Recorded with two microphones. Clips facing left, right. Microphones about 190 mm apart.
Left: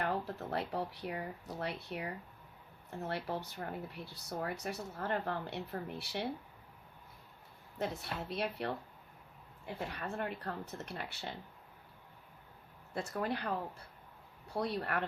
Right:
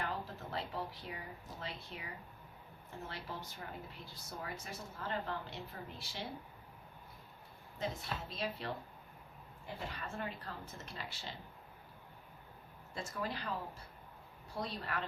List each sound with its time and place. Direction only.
0.0 s a sound: 65° left (ahead or behind)
3.1 s speech: 65° left (ahead or behind)
7.8 s speech: 65° left (ahead or behind)
9.9 s speech: 60° left (ahead or behind)
12.9 s speech: 60° left (ahead or behind)